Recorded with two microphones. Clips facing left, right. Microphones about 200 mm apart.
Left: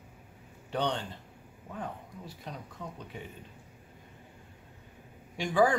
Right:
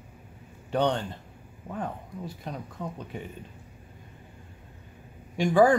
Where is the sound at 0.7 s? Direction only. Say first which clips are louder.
Right 6 dB; 50° right (ahead or behind).